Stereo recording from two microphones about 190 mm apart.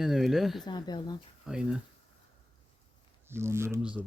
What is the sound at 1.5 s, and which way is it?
Speech, 5° right (ahead or behind).